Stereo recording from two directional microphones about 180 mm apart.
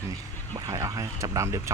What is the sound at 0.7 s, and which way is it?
Speech, 20° right (ahead or behind).